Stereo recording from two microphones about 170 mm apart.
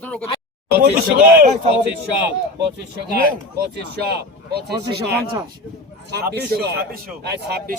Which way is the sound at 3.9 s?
75° right (ahead or behind).